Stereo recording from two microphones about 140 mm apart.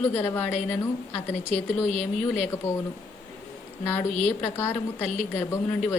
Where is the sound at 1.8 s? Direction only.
55° left (ahead or behind).